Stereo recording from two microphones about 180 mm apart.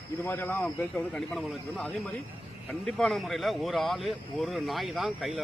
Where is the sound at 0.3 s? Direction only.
10° left (ahead or behind).